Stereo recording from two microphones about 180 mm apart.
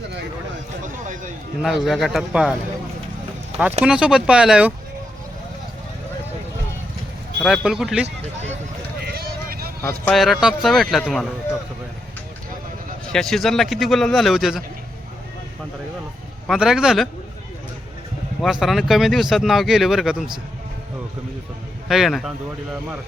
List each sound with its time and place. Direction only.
1.0 s a sound: 45° right (ahead or behind)
1.6 s speech: centre (ahead or behind)
3.8 s speech: 5° right (ahead or behind)
7.3 s speech: centre (ahead or behind)
8.0 s speech: 40° right (ahead or behind)
9.0 s vehicle: 60° right (ahead or behind)
10.1 s speech: centre (ahead or behind)
13.1 s speech: centre (ahead or behind)
16.5 s speech: 5° right (ahead or behind)
18.6 s speech: centre (ahead or behind)
21.8 s speech: centre (ahead or behind)